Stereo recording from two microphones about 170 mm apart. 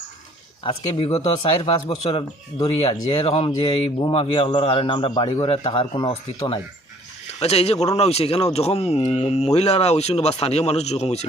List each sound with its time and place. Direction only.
0.6 s a man's voice: 30° left (ahead or behind)